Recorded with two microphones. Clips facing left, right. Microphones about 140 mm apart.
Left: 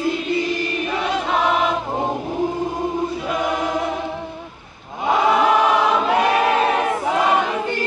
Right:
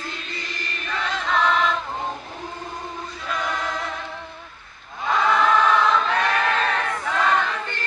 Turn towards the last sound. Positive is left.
turn(degrees=15)  # may be behind; listen again after turning